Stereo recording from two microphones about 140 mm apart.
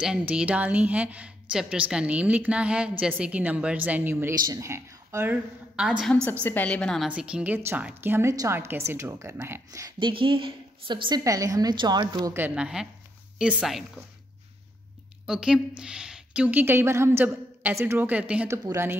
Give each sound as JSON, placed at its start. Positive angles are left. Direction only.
{"t": 0.0, "sound": "a woman's voice", "side_deg": -5}
{"t": 6.4, "sound": "a woman's voice", "side_deg": 10}
{"t": 7.1, "sound": "a woman's voice", "side_deg": -10}
{"t": 9.9, "sound": "a woman's voice", "side_deg": -35}
{"t": 12.4, "sound": "a woman's voice", "side_deg": -10}
{"t": 15.2, "sound": "a woman's voice", "side_deg": -5}